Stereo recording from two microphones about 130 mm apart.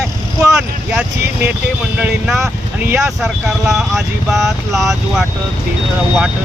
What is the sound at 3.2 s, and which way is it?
Speech, centre (ahead or behind).